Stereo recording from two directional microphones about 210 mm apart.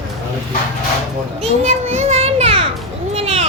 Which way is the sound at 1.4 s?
30° right (ahead or behind).